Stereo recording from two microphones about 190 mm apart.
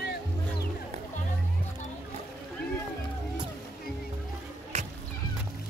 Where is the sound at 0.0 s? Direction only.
60° left (ahead or behind).